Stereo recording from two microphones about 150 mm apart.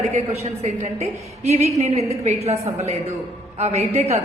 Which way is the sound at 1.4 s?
50° right (ahead or behind).